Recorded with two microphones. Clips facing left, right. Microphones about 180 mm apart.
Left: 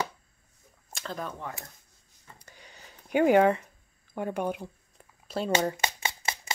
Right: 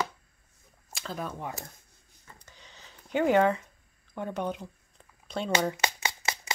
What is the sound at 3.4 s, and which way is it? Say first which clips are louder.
Speech: left 2 dB; 60° left (ahead or behind).